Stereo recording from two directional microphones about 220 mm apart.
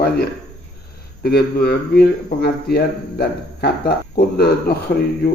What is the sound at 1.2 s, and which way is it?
A man's voice, 45° left (ahead or behind).